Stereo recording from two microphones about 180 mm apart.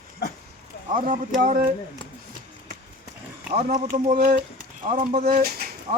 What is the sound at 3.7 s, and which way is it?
Speech, 45° right (ahead or behind).